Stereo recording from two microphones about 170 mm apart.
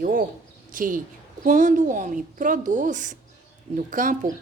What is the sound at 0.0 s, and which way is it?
A woman's voice, 55° right (ahead or behind).